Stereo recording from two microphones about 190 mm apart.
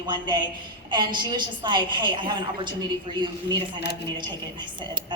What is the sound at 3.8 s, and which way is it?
Speech, 60° left (ahead or behind).